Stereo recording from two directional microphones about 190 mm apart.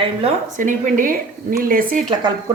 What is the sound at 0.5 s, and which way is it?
Speech, 45° right (ahead or behind).